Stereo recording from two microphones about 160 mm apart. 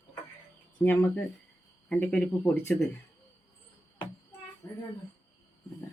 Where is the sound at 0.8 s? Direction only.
15° left (ahead or behind).